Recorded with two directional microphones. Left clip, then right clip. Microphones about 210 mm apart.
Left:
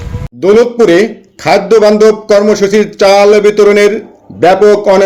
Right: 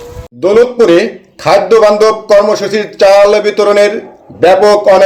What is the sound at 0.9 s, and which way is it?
Speech, 45° left (ahead or behind).